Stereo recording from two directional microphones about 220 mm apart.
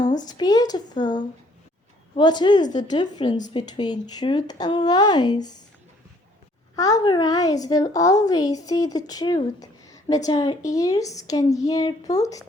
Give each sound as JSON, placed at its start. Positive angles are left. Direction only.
{"t": 0.3, "sound": "speech", "side_deg": 20}
{"t": 6.7, "sound": "a woman's voice", "side_deg": 15}